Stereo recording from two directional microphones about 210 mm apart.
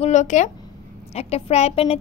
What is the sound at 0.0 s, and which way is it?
A child's voice, 35° left (ahead or behind).